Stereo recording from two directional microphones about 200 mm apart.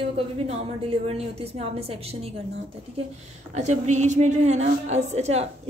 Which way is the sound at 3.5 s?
35° right (ahead or behind).